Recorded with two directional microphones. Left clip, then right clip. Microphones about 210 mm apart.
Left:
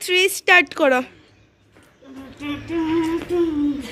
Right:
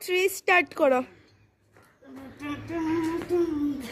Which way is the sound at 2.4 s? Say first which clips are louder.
Left 7 dB; 5° right (ahead or behind).